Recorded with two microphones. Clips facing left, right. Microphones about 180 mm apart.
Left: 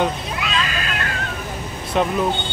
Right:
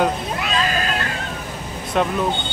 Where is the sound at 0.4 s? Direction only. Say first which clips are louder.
Right 2 dB; 40° right (ahead or behind).